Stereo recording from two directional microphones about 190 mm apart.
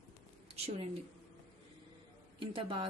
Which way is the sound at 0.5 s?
30° right (ahead or behind).